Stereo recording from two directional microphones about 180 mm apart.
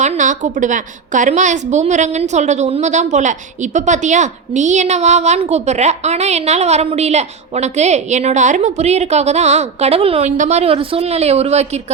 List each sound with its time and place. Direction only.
0.0 s a woman's voice: 45° right (ahead or behind)